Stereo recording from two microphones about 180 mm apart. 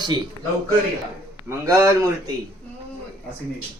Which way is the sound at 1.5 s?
15° right (ahead or behind).